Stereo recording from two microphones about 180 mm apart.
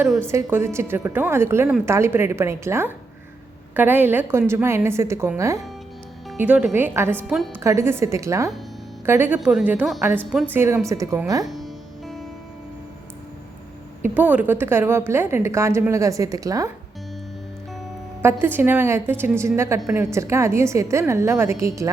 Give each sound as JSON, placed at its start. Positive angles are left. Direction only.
{"t": 0.0, "sound": "a woman's voice", "side_deg": -10}
{"t": 6.4, "sound": "a woman's voice", "side_deg": -5}
{"t": 7.3, "sound": "a woman's voice", "side_deg": 0}
{"t": 7.5, "sound": "a woman's voice", "side_deg": -15}
{"t": 11.4, "sound": "music", "side_deg": 0}
{"t": 14.2, "sound": "a woman's voice", "side_deg": -10}
{"t": 18.2, "sound": "a woman's voice", "side_deg": -15}